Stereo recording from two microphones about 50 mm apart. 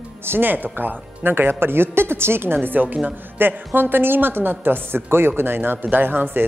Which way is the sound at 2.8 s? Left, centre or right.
Right.